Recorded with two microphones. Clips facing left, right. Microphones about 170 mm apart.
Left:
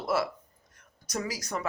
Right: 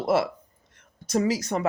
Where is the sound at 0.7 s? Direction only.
25° right (ahead or behind).